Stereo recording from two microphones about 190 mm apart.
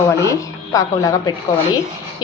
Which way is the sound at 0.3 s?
15° left (ahead or behind).